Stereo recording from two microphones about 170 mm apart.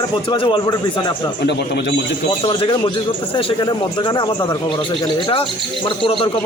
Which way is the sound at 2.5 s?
30° left (ahead or behind).